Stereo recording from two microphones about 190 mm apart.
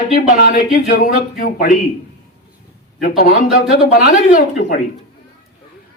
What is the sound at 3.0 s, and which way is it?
Speech, 50° left (ahead or behind).